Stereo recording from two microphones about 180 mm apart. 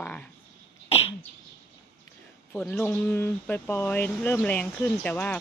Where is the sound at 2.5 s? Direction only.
10° left (ahead or behind).